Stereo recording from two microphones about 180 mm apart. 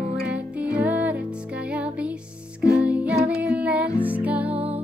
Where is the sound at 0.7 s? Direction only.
10° right (ahead or behind).